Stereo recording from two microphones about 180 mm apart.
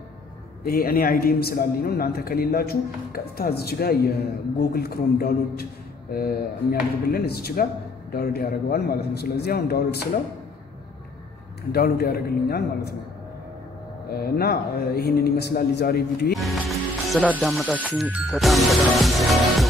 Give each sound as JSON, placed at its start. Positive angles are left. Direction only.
{"t": 0.7, "sound": "a man's voice", "side_deg": 55}
{"t": 11.7, "sound": "a man's voice", "side_deg": 60}
{"t": 14.1, "sound": "a man's voice", "side_deg": 60}
{"t": 16.3, "sound": "speech", "side_deg": 0}